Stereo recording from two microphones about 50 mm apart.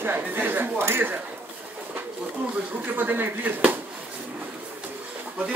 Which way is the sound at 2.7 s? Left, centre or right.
Right.